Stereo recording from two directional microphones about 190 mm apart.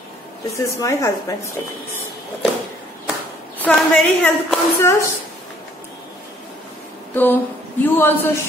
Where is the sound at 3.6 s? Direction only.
5° left (ahead or behind).